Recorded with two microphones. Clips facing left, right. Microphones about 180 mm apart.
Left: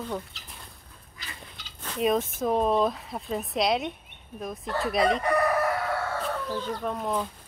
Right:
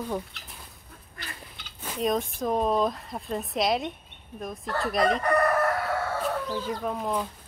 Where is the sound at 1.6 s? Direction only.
55° right (ahead or behind).